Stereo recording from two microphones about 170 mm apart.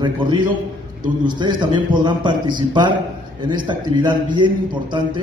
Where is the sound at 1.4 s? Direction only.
25° right (ahead or behind).